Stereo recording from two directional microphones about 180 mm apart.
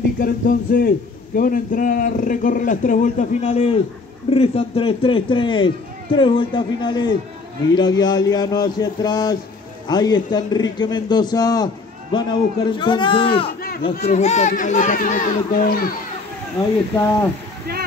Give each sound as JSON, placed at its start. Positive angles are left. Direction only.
{"t": 0.2, "sound": "a man's voice", "side_deg": 50}
{"t": 13.5, "sound": "a sound", "side_deg": 55}
{"t": 14.0, "sound": "a man's voice", "side_deg": 40}